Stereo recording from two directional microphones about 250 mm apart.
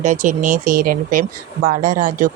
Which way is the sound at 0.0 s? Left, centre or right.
Right.